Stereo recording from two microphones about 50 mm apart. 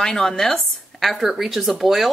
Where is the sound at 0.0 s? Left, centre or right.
Centre.